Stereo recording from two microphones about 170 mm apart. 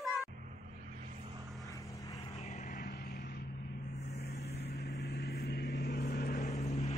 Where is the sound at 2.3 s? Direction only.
40° left (ahead or behind).